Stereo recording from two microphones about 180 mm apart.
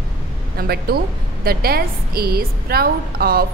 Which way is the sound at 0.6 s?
60° right (ahead or behind).